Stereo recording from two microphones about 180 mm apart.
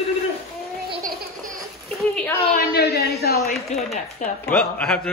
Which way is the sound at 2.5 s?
60° left (ahead or behind).